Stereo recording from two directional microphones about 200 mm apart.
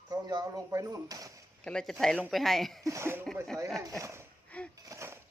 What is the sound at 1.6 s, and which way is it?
Speech, 5° left (ahead or behind).